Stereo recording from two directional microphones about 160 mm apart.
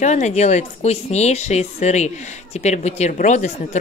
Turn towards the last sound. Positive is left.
turn(degrees=50)  # may be behind; listen again after turning